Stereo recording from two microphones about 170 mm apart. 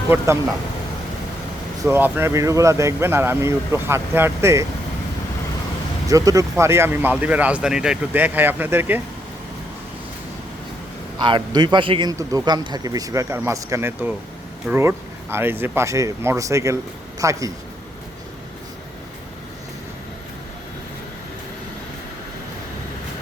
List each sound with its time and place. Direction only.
0.1 s speech: 10° right (ahead or behind)
1.8 s speech: 10° right (ahead or behind)
6.1 s speech: 20° right (ahead or behind)
11.2 s a man's voice: 30° right (ahead or behind)